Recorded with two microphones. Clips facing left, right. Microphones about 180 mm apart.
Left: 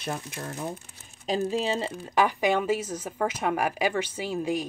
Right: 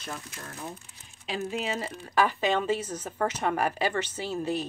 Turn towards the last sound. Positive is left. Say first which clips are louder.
# left 2 dB
turn(degrees=10)  # may be behind; listen again after turning